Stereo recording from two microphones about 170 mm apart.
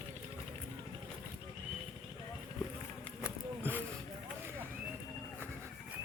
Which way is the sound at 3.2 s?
10° right (ahead or behind).